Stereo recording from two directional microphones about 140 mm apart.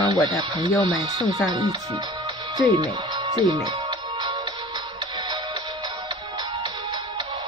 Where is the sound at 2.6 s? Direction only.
25° right (ahead or behind).